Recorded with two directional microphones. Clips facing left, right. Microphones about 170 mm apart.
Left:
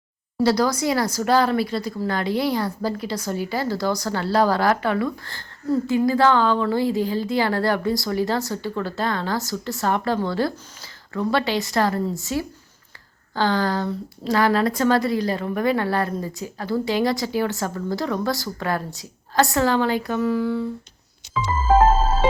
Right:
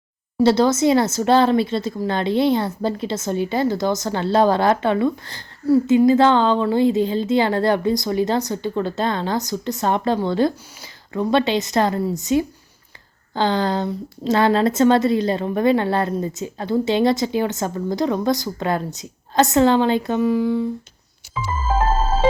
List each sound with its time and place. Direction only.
0.3 s a woman's voice: 25° right (ahead or behind)